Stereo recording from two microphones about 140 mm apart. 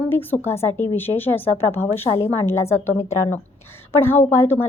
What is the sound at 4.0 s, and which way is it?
Speech, 15° left (ahead or behind).